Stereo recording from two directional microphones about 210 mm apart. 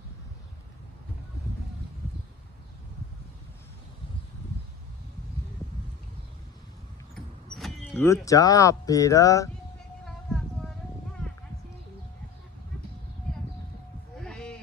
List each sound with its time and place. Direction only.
7.2 s speech: centre (ahead or behind)
10.0 s a sound: centre (ahead or behind)
14.1 s sheep: 5° left (ahead or behind)